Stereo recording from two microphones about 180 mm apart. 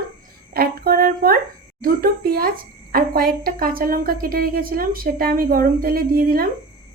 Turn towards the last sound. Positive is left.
turn(degrees=-55)  # may be behind; listen again after turning